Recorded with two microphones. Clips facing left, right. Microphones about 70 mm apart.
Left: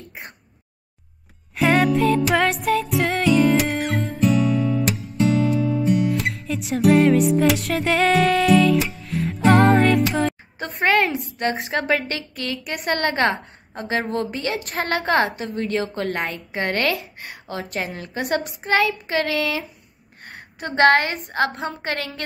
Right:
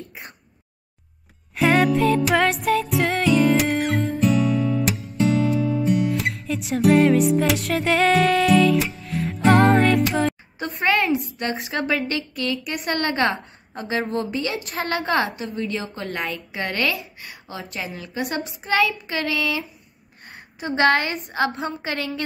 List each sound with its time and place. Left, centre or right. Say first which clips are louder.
1.5 s music: even; centre
10.8 s a woman's voice: left 1 dB; left
20.2 s a sound: left 1 dB; left
21.3 s a woman's voice: left 1 dB; left